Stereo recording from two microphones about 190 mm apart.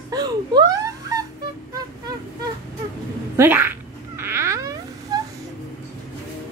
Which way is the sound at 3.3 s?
10° right (ahead or behind).